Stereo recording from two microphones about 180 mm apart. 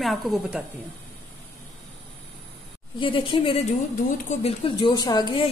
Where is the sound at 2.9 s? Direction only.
30° left (ahead or behind).